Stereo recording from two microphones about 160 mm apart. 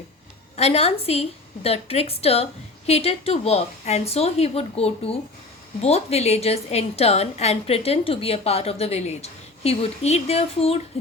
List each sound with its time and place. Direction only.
0.5 s a woman's voice: 40° left (ahead or behind)